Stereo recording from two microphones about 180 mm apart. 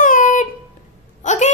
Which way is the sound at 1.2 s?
40° left (ahead or behind).